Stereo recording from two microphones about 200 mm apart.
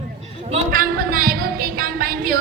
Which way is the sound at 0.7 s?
45° right (ahead or behind).